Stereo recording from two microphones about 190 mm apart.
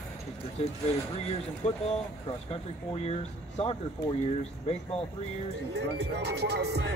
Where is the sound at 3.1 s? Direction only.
35° left (ahead or behind).